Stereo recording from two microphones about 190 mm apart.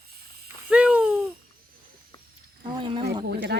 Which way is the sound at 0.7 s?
5° right (ahead or behind).